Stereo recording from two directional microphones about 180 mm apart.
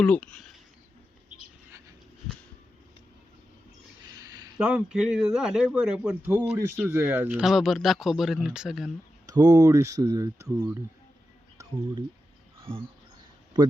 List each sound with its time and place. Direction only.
0.0 s speech: 5° left (ahead or behind)
4.1 s a sound: 20° right (ahead or behind)
4.6 s speech: 5° right (ahead or behind)
9.2 s speech: 20° right (ahead or behind)
12.5 s a sound: 30° right (ahead or behind)
13.5 s speech: 25° right (ahead or behind)